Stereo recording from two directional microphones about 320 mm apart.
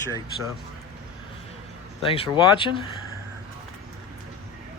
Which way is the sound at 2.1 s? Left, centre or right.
Centre.